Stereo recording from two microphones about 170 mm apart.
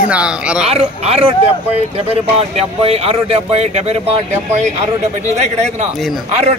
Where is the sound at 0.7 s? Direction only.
35° right (ahead or behind).